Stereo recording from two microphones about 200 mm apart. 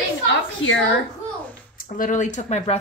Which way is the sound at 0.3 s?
70° left (ahead or behind).